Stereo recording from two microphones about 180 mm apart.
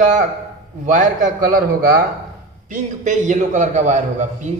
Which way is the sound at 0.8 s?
45° right (ahead or behind).